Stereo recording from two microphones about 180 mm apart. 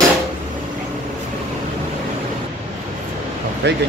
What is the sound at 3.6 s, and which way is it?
Speech, 70° right (ahead or behind).